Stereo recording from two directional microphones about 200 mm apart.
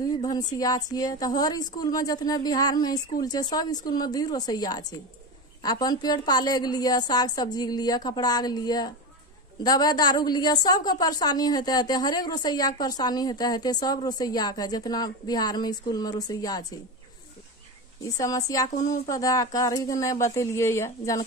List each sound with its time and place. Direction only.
0.2 s a woman's voice: 20° left (ahead or behind)
18.1 s speech: 15° left (ahead or behind)